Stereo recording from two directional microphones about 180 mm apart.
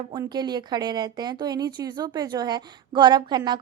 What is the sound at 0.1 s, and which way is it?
Speech, 25° right (ahead or behind).